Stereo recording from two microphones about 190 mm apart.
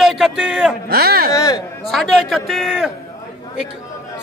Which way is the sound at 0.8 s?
55° right (ahead or behind).